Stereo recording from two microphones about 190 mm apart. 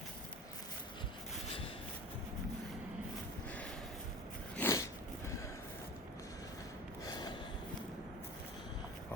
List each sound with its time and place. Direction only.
4.5 s biting: 15° left (ahead or behind)
7.0 s gasp: 20° left (ahead or behind)